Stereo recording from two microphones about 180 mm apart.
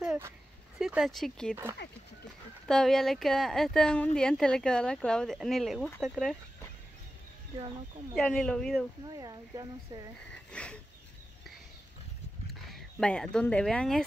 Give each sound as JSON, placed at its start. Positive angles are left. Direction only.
{"t": 0.7, "sound": "speech", "side_deg": -5}
{"t": 2.7, "sound": "speech", "side_deg": 0}
{"t": 8.1, "sound": "speech", "side_deg": 5}
{"t": 9.0, "sound": "speech", "side_deg": -25}
{"t": 10.3, "sound": "sniff", "side_deg": 5}
{"t": 12.4, "sound": "speech", "side_deg": 0}